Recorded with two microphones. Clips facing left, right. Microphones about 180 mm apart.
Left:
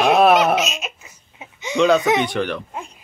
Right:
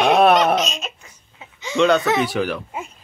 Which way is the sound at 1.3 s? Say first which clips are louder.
Left 2 dB; 20° left (ahead or behind).